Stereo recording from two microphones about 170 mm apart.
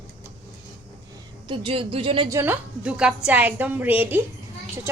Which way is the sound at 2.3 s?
10° right (ahead or behind).